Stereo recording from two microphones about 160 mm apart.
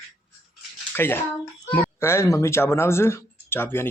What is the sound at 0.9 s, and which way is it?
A child's voice, 15° left (ahead or behind).